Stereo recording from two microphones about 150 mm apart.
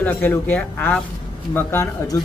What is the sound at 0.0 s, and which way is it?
Speech, 10° left (ahead or behind).